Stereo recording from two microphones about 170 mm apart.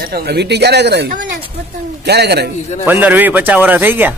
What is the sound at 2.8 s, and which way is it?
Speech, 10° right (ahead or behind).